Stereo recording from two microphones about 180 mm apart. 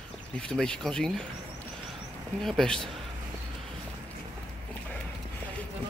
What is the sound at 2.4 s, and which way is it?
Speech, centre (ahead or behind).